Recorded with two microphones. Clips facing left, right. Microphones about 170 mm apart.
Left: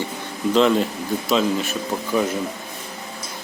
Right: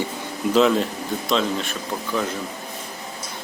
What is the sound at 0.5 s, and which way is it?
Speech, centre (ahead or behind).